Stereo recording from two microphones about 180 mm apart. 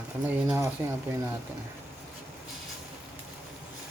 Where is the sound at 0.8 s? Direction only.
15° right (ahead or behind).